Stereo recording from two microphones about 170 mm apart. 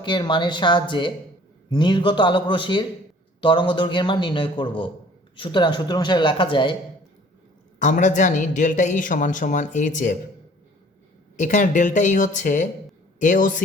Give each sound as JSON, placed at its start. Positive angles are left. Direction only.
{"t": 0.0, "sound": "speech", "side_deg": 25}
{"t": 7.8, "sound": "speech", "side_deg": 50}
{"t": 11.3, "sound": "speech", "side_deg": 50}